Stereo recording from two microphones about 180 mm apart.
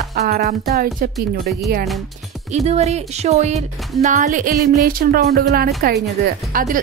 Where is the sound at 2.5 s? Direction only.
35° right (ahead or behind).